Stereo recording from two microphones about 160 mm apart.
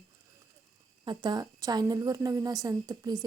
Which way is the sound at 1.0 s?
25° right (ahead or behind).